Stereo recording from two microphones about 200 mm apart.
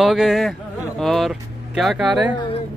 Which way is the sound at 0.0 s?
Centre (ahead or behind).